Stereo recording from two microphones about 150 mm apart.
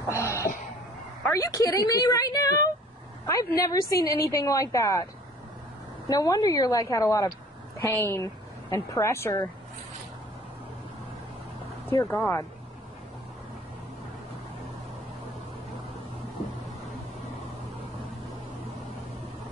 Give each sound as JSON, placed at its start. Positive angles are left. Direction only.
{"t": 0.1, "sound": "a sound", "side_deg": 20}
{"t": 1.3, "sound": "a woman's voice", "side_deg": 25}
{"t": 6.0, "sound": "a woman's voice", "side_deg": 25}
{"t": 11.9, "sound": "speech", "side_deg": 10}